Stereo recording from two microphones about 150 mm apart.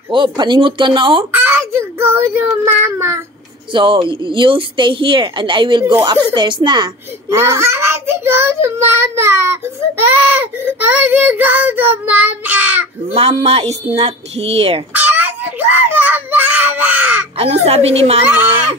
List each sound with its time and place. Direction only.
0.1 s a woman's voice: 30° right (ahead or behind)
1.3 s child singing: 15° right (ahead or behind)
3.7 s a woman's voice: 35° right (ahead or behind)
7.3 s child singing: 15° right (ahead or behind)
13.1 s a woman's voice: 45° right (ahead or behind)
15.0 s screaming: 10° right (ahead or behind)
17.6 s a woman's voice: 45° right (ahead or behind)
18.2 s child singing: 15° right (ahead or behind)